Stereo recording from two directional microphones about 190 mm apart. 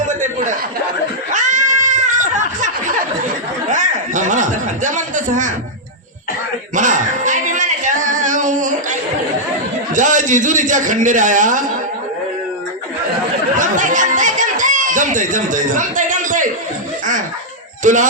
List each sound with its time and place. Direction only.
0.1 s speech: 40° right (ahead or behind)
1.3 s a sound: 40° right (ahead or behind)
3.7 s chuckle: 40° right (ahead or behind)
6.7 s singing: 40° right (ahead or behind)
9.9 s a man's voice: 40° right (ahead or behind)
13.6 s a sound: 40° right (ahead or behind)
17.8 s speech: 40° right (ahead or behind)